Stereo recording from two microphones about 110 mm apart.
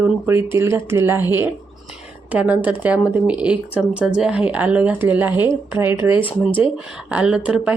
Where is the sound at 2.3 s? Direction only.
15° right (ahead or behind).